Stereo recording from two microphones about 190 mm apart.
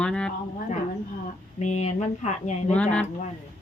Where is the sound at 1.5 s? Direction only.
35° left (ahead or behind).